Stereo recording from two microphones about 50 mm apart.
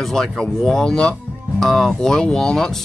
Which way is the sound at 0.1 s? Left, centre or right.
Centre.